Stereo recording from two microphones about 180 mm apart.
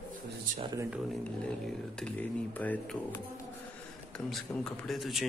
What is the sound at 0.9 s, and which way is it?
Speech, centre (ahead or behind).